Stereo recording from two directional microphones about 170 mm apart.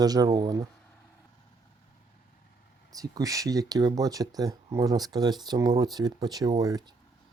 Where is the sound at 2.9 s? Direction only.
20° right (ahead or behind).